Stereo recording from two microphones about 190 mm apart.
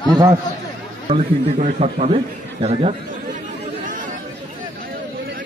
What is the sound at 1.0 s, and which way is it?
A man's voice, 35° right (ahead or behind).